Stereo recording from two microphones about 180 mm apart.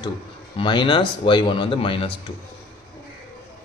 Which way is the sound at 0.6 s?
25° left (ahead or behind).